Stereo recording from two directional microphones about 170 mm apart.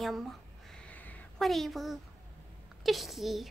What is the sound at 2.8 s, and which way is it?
Speech, centre (ahead or behind).